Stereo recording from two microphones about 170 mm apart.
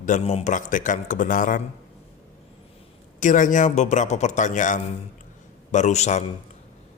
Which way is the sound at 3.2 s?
50° left (ahead or behind).